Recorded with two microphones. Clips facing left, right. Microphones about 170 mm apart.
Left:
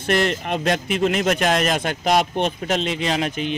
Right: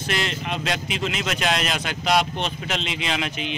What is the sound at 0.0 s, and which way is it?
Speech, 50° left (ahead or behind).